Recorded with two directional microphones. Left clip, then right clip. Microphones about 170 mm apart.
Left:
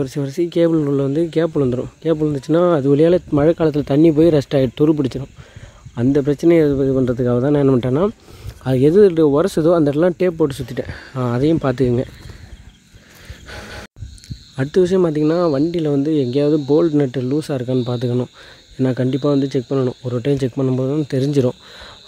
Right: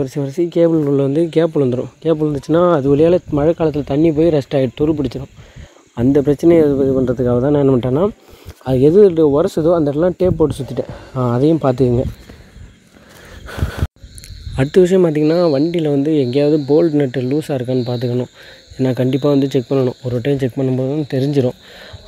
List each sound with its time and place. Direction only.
0.0 s speech: 5° left (ahead or behind)
0.8 s speech: 5° left (ahead or behind); by 5.3 s 25° left (ahead or behind)
5.9 s speech: centre (ahead or behind)
6.9 s speech: 20° left (ahead or behind); by 11.9 s centre (ahead or behind)
13.5 s a sound: 15° right (ahead or behind)
14.5 s speech: 5° right (ahead or behind); by 21.9 s 15° left (ahead or behind)